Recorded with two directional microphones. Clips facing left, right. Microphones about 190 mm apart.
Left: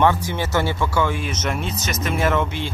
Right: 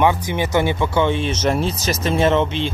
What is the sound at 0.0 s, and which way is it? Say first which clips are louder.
Speech: right 1 dB; 15° right (ahead or behind).